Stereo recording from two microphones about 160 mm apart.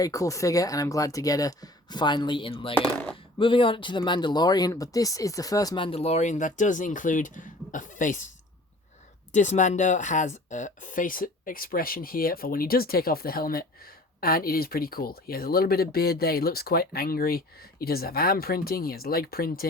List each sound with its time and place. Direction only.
0.0 s speech: 20° left (ahead or behind)
2.7 s speech: 5° left (ahead or behind)
3.3 s speech: 30° left (ahead or behind); by 8.3 s 50° left (ahead or behind)
9.3 s speech: 50° left (ahead or behind); by 19.6 s 70° left (ahead or behind)